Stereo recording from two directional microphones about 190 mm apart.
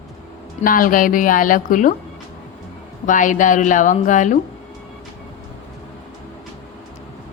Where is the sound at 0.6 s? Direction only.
45° left (ahead or behind).